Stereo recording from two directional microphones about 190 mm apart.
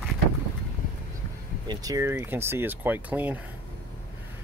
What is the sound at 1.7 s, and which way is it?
Speech, 20° right (ahead or behind).